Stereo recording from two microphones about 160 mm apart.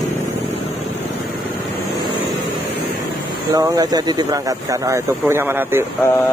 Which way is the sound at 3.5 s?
25° right (ahead or behind).